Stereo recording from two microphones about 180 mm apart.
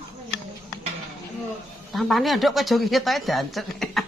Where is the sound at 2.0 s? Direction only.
Centre (ahead or behind).